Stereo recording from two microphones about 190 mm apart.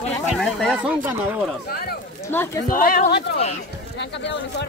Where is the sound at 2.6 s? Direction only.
50° left (ahead or behind).